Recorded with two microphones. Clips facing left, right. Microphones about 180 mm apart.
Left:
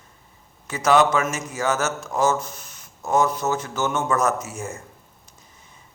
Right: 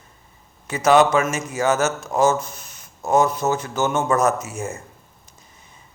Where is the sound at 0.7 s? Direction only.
15° right (ahead or behind).